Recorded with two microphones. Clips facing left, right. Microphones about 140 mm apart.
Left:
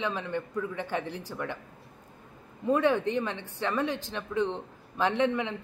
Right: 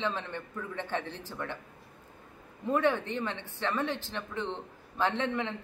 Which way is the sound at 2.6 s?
15° left (ahead or behind).